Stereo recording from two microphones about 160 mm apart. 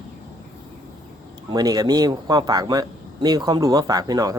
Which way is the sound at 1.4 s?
25° right (ahead or behind).